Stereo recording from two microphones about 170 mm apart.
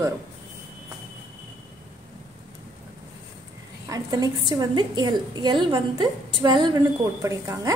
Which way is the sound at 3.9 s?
20° right (ahead or behind).